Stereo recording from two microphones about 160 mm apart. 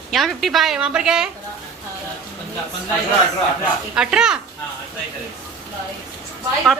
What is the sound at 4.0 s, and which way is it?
Speech, 5° right (ahead or behind).